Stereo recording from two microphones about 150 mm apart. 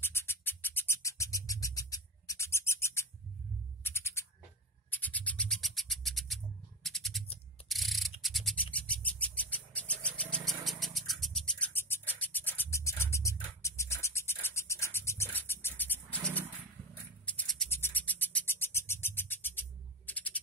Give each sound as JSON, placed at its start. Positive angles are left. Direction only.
{"t": 0.0, "sound": "a sound", "side_deg": 15}
{"t": 3.8, "sound": "music", "side_deg": 15}
{"t": 4.9, "sound": "a sound", "side_deg": 10}
{"t": 7.6, "sound": "ratchet", "side_deg": 0}
{"t": 8.2, "sound": "a sound", "side_deg": 0}
{"t": 8.7, "sound": "bird", "side_deg": 10}
{"t": 17.3, "sound": "scratch", "side_deg": 5}
{"t": 17.6, "sound": "bird", "side_deg": 15}
{"t": 20.1, "sound": "music", "side_deg": 10}